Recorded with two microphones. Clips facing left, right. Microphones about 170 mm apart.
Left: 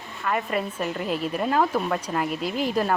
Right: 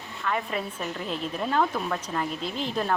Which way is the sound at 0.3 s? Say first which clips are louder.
Left 3 dB; 5° left (ahead or behind).